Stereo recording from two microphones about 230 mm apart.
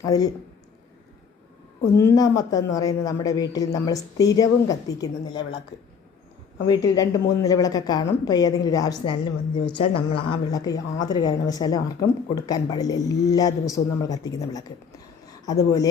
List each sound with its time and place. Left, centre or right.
0.0 s a woman's voice: centre
2.0 s a woman's voice: centre
6.7 s a woman's voice: centre